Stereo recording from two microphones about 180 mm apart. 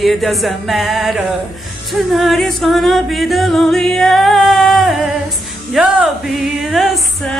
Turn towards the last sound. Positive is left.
turn(degrees=0)  # may be behind; listen again after turning